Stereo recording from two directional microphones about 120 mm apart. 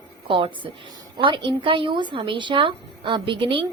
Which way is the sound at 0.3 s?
45° right (ahead or behind).